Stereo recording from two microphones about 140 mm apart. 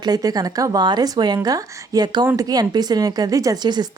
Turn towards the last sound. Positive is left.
turn(degrees=-30)  # may be behind; listen again after turning